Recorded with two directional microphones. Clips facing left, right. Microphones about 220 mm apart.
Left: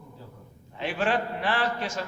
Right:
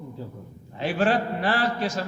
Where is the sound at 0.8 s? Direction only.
35° right (ahead or behind).